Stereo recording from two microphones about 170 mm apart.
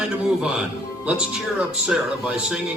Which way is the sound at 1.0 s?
5° right (ahead or behind).